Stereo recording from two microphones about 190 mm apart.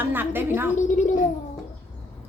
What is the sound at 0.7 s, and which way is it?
Speech, 40° left (ahead or behind).